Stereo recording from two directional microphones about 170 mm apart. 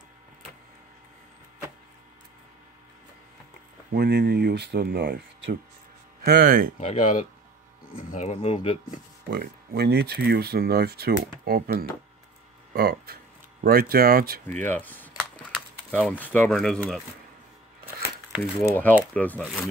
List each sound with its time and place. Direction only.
3.9 s speech: 75° right (ahead or behind)
6.8 s speech: 40° left (ahead or behind)
7.9 s speech: 35° left (ahead or behind)
9.3 s speech: 65° right (ahead or behind)
14.6 s speech: 10° left (ahead or behind)
18.6 s speech: 10° left (ahead or behind)